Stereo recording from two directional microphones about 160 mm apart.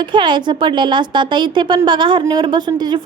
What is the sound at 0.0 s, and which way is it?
A woman's voice, 30° right (ahead or behind).